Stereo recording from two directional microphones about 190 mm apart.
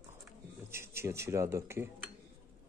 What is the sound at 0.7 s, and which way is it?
A man's voice, 15° right (ahead or behind).